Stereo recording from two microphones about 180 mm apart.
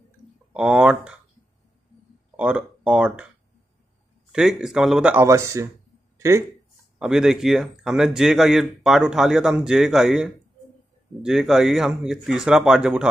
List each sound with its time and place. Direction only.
0.5 s speech: 5° right (ahead or behind)
2.3 s speech: 5° right (ahead or behind)
4.3 s speech: 5° right (ahead or behind)
6.1 s a sound: 15° right (ahead or behind)
7.0 s speech: 5° right (ahead or behind)